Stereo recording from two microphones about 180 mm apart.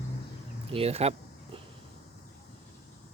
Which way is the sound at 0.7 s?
35° right (ahead or behind).